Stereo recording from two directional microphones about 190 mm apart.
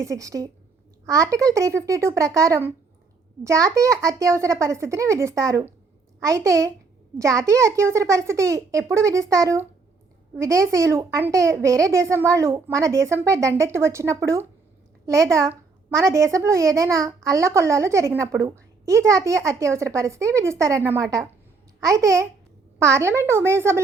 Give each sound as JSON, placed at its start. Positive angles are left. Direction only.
{"t": 0.0, "sound": "a child's voice", "side_deg": -15}